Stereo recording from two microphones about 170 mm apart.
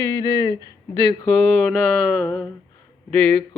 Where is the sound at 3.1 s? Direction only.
5° left (ahead or behind).